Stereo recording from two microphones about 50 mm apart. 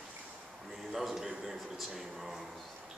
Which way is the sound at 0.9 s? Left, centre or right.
Centre.